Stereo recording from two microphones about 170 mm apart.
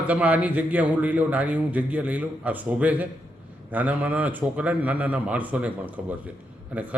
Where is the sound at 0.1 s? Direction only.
10° right (ahead or behind).